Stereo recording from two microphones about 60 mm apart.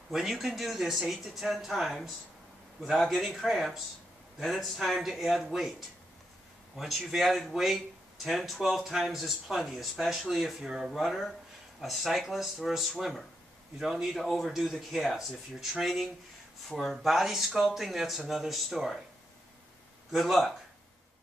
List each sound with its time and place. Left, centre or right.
0.1 s speech: centre
20.1 s speech: centre